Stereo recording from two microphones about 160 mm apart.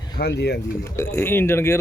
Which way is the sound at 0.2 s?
90° left.